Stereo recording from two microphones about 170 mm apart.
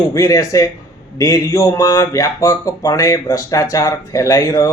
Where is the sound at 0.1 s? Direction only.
20° left (ahead or behind).